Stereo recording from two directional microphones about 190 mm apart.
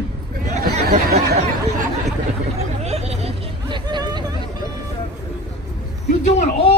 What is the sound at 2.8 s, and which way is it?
Hubbub, 35° right (ahead or behind).